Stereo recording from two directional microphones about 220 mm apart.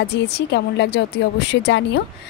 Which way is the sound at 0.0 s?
50° left (ahead or behind).